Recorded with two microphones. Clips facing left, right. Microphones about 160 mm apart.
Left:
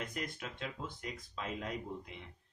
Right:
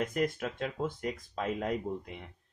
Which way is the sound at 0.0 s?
50° right (ahead or behind).